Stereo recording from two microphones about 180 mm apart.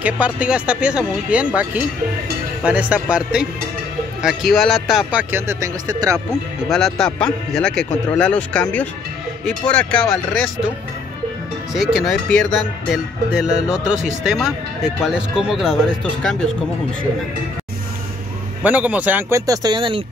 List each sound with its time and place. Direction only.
0.0 s speech: 5° right (ahead or behind)
5.3 s speech: 15° right (ahead or behind)
6.7 s speech: centre (ahead or behind)
11.7 s speech: centre (ahead or behind)
18.6 s speech: 10° right (ahead or behind); by 20.0 s 25° right (ahead or behind)